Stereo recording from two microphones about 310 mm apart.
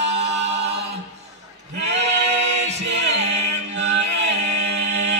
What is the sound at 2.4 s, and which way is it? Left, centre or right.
Music, right.